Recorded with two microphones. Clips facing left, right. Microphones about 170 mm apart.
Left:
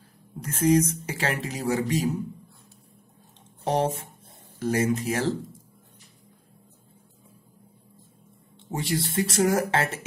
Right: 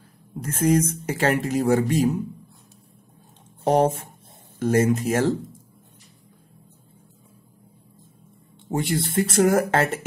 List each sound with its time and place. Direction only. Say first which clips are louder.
0.4 s speech: right 1 dB; 50° right (ahead or behind)
3.6 s speech: right 6 dB; 50° right (ahead or behind)
8.7 s speech: right 4 dB; 55° right (ahead or behind)